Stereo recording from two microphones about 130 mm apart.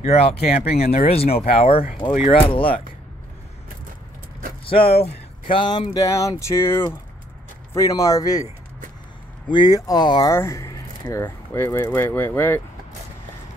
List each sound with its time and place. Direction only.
0.0 s speech: 55° left (ahead or behind)
4.6 s speech: 45° left (ahead or behind); by 8.5 s 30° left (ahead or behind)
9.5 s speech: 30° left (ahead or behind)
10.3 s speech: 20° left (ahead or behind)